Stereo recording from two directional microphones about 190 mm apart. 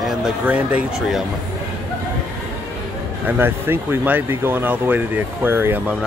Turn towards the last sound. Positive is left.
turn(degrees=-10)  # may be behind; listen again after turning